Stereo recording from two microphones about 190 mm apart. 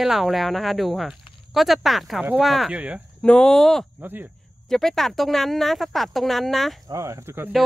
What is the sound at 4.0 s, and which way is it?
Speech, 10° right (ahead or behind).